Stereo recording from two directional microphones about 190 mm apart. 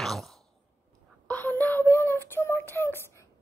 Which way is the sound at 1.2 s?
10° left (ahead or behind).